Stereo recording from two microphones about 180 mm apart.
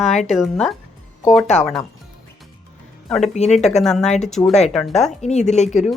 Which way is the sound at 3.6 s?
5° left (ahead or behind).